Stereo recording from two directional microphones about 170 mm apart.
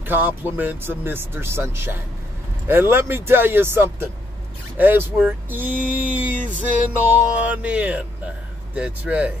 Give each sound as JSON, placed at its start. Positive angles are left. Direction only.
{"t": 0.0, "sound": "speech", "side_deg": -10}
{"t": 6.4, "sound": "music", "side_deg": -50}
{"t": 6.9, "sound": "speech", "side_deg": -10}